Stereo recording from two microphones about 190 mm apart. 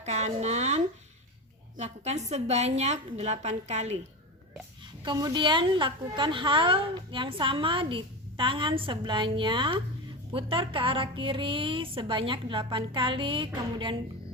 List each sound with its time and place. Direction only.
0.0 s a woman's voice: 35° right (ahead or behind)
5.0 s a woman's voice: 25° right (ahead or behind)